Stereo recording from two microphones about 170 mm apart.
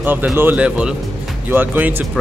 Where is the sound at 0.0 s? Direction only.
10° right (ahead or behind).